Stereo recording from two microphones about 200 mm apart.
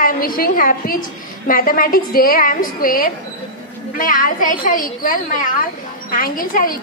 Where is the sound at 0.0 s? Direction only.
45° left (ahead or behind).